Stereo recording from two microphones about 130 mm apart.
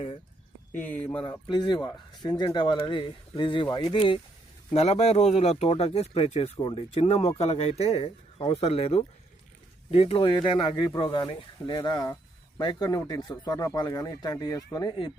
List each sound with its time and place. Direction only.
0.8 s speech: 15° left (ahead or behind)
1.5 s speech: 35° left (ahead or behind)
4.7 s speech: 55° left (ahead or behind); by 15.1 s 35° left (ahead or behind)